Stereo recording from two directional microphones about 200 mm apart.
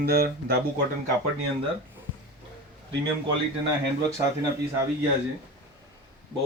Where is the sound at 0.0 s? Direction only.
50° right (ahead or behind).